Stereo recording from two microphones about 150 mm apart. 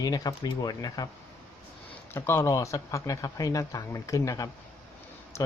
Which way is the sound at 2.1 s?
15° left (ahead or behind).